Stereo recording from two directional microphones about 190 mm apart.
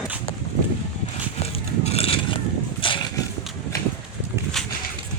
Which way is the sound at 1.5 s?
30° left (ahead or behind).